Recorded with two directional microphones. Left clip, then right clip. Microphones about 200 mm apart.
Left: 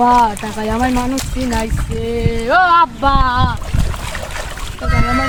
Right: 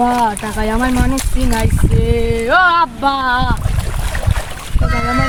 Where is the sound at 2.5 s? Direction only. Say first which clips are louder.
Left 1 dB; 25° right (ahead or behind).